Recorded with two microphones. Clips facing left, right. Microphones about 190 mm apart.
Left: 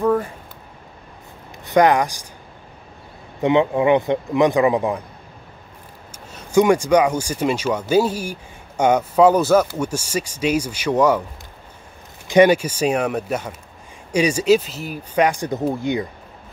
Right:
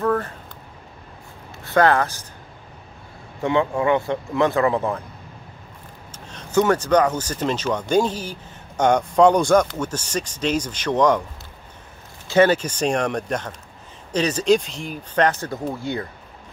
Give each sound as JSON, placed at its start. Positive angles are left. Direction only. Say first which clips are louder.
{"t": 0.0, "sound": "speech", "louder": "left 3 dB", "side_deg": 10}
{"t": 1.6, "sound": "speech", "louder": "left 2 dB", "side_deg": 15}
{"t": 3.3, "sound": "speech", "louder": "left 4 dB", "side_deg": 20}
{"t": 6.1, "sound": "speech", "louder": "left 3 dB", "side_deg": 10}
{"t": 12.3, "sound": "speech", "louder": "left 3 dB", "side_deg": 15}